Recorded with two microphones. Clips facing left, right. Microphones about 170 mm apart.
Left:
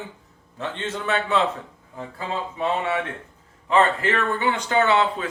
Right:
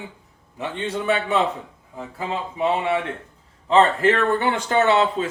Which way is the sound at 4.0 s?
45° right (ahead or behind).